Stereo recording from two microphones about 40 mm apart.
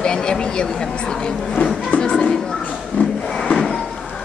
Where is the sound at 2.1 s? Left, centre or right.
Centre.